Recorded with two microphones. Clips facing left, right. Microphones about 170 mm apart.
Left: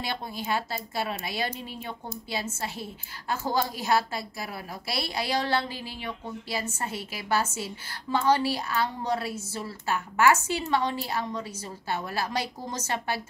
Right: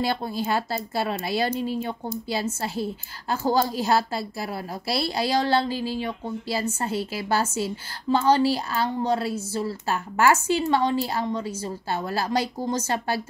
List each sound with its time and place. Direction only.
0.0 s a woman's voice: 35° right (ahead or behind)